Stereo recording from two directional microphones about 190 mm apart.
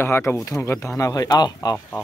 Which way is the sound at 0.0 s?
10° left (ahead or behind).